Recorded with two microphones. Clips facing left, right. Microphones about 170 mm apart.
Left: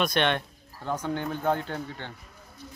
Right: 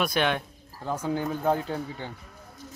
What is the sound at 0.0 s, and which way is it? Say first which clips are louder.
Speech: even; 5° right (ahead or behind).